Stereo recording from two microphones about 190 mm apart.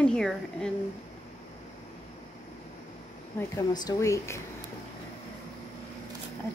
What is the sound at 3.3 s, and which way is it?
Speech, 20° left (ahead or behind).